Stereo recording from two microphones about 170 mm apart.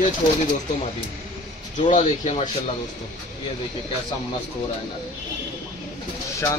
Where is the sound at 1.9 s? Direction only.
40° left (ahead or behind).